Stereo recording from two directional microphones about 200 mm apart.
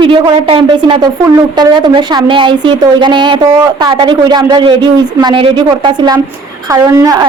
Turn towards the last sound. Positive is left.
turn(degrees=-15)  # may be behind; listen again after turning